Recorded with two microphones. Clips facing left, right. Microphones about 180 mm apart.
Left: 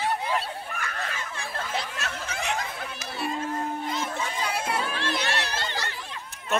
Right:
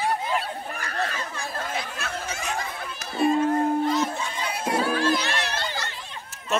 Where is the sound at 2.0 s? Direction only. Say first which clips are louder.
Right 1 dB; 60° left (ahead or behind).